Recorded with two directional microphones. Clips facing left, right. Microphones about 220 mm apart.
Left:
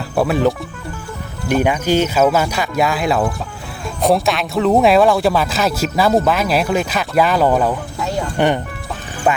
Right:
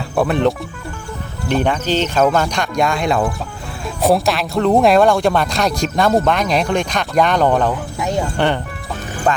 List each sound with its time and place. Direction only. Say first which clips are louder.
0.2 s speech: even; centre (ahead or behind)
7.9 s a sound: right 2 dB; 20° right (ahead or behind)
8.4 s speech: left 2 dB; 15° left (ahead or behind)